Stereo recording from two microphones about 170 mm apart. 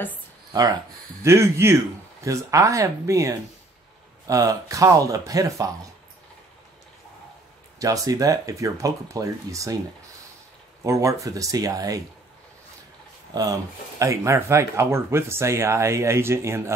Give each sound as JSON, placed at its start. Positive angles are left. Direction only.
{"t": 0.5, "sound": "speech", "side_deg": -20}
{"t": 7.8, "sound": "speech", "side_deg": -20}
{"t": 10.8, "sound": "speech", "side_deg": -20}
{"t": 13.3, "sound": "speech", "side_deg": -20}